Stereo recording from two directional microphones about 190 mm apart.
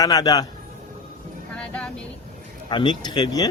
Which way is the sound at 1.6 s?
5° left (ahead or behind).